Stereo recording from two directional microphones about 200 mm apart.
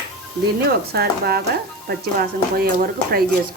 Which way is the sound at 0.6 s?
50° right (ahead or behind).